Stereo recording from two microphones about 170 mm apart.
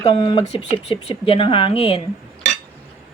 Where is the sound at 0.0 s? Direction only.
30° left (ahead or behind).